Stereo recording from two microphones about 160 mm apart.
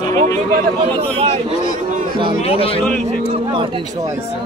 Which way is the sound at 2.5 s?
35° left (ahead or behind).